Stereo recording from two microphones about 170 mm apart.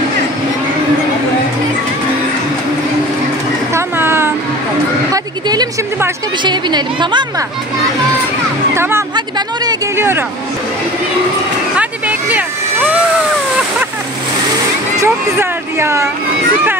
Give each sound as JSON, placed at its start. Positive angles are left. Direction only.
{"t": 3.7, "sound": "a sound", "side_deg": -15}
{"t": 5.1, "sound": "a woman's voice", "side_deg": -20}
{"t": 8.7, "sound": "speech", "side_deg": -15}
{"t": 11.7, "sound": "vehicle", "side_deg": -10}
{"t": 15.0, "sound": "speech", "side_deg": -15}